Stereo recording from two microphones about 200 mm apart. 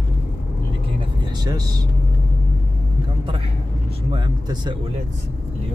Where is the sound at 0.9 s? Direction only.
20° right (ahead or behind).